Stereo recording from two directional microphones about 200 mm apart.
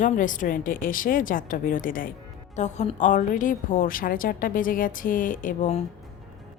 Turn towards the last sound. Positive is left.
turn(degrees=40)  # may be behind; listen again after turning